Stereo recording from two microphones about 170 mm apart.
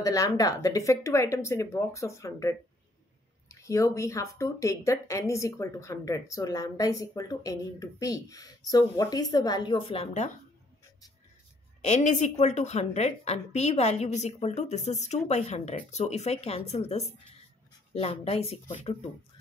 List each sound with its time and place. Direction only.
0.0 s speech: 20° left (ahead or behind); by 10.3 s 40° left (ahead or behind)
11.8 s a woman's voice: 40° left (ahead or behind)